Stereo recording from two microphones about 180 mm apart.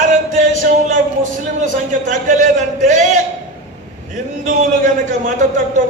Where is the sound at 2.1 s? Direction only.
45° right (ahead or behind).